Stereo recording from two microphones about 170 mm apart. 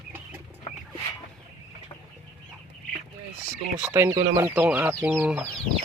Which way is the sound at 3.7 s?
10° right (ahead or behind).